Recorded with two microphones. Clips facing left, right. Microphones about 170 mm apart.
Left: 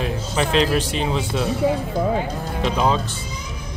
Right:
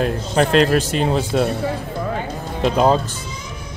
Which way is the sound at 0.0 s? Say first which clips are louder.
Right 5 dB; 55° right (ahead or behind).